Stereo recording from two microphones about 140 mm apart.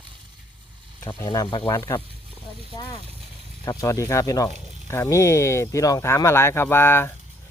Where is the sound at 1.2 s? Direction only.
25° left (ahead or behind).